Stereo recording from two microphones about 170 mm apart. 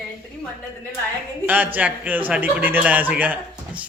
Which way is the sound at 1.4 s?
10° right (ahead or behind).